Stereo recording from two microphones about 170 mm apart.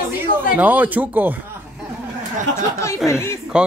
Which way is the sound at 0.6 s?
10° right (ahead or behind).